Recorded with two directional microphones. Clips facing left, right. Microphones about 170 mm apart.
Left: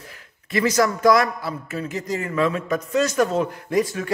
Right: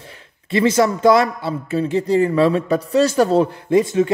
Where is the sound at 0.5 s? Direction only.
25° right (ahead or behind).